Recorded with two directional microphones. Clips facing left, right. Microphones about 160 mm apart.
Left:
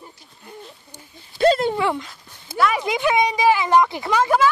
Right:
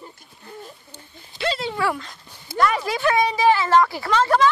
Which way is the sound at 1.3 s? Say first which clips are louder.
Left 9 dB; 50° left (ahead or behind).